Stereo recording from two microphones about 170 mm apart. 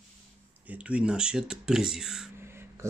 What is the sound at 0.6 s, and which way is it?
Speech, 10° right (ahead or behind).